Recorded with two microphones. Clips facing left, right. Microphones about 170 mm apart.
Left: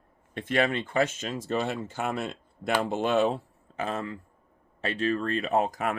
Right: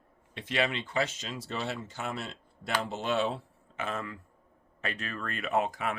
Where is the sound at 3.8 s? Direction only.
35° left (ahead or behind).